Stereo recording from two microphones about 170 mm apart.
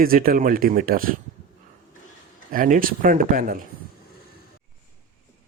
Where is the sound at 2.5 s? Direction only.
55° right (ahead or behind).